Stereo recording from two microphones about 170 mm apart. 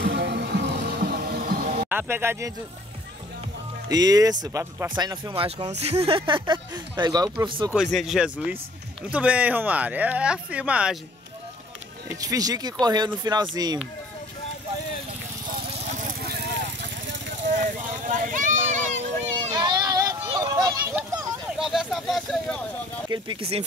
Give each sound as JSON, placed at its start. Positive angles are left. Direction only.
{"t": 0.0, "sound": "music", "side_deg": -80}
{"t": 1.9, "sound": "speech", "side_deg": -10}
{"t": 3.9, "sound": "speech", "side_deg": -20}
{"t": 7.7, "sound": "speech", "side_deg": 0}
{"t": 12.2, "sound": "speech", "side_deg": -20}
{"t": 15.9, "sound": "vehicle", "side_deg": -60}
{"t": 17.5, "sound": "a sound", "side_deg": -50}
{"t": 19.5, "sound": "child singing", "side_deg": -25}
{"t": 20.3, "sound": "a sound", "side_deg": -20}
{"t": 21.5, "sound": "speech", "side_deg": -5}
{"t": 23.0, "sound": "speech", "side_deg": -25}